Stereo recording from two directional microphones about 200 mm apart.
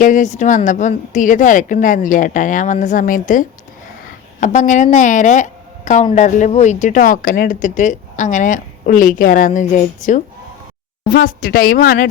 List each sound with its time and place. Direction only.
0.0 s a woman's voice: 40° left (ahead or behind)